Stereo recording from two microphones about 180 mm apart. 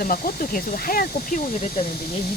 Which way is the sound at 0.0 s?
50° left (ahead or behind).